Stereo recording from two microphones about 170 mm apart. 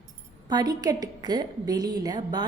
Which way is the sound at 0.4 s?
25° right (ahead or behind).